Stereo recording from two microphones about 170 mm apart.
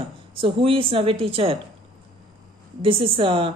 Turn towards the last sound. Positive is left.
turn(degrees=-30)  # may be behind; listen again after turning